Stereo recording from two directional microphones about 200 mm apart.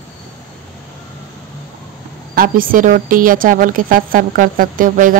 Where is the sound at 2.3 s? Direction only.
45° right (ahead or behind).